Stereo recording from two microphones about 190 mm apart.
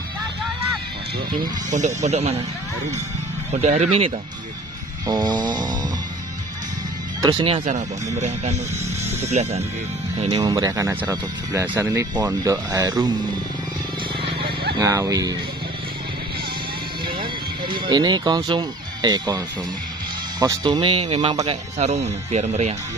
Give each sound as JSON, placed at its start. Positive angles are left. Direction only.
{"t": 1.3, "sound": "speech", "side_deg": -45}
{"t": 3.5, "sound": "speech", "side_deg": -35}
{"t": 5.0, "sound": "speech", "side_deg": -20}
{"t": 7.2, "sound": "speech", "side_deg": -25}
{"t": 9.2, "sound": "speech", "side_deg": -35}
{"t": 10.3, "sound": "speech", "side_deg": -20}
{"t": 14.4, "sound": "a sound", "side_deg": -55}
{"t": 14.8, "sound": "speech", "side_deg": -15}
{"t": 17.8, "sound": "speech", "side_deg": -20}
{"t": 21.7, "sound": "speech", "side_deg": -35}